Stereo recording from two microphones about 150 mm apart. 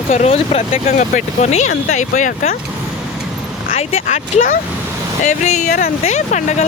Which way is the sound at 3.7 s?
45° left (ahead or behind).